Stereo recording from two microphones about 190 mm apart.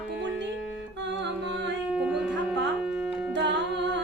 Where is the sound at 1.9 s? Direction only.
5° right (ahead or behind).